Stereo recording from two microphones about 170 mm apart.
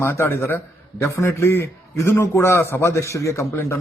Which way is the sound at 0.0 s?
15° left (ahead or behind).